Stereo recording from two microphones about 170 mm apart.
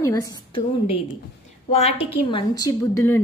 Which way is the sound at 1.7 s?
40° left (ahead or behind).